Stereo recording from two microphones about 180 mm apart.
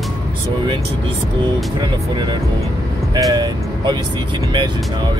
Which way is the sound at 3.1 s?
20° right (ahead or behind).